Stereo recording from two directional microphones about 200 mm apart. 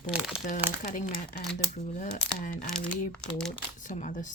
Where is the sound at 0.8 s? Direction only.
40° left (ahead or behind).